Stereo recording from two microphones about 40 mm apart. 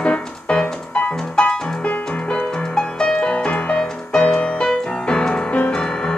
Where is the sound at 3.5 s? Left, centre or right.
Left.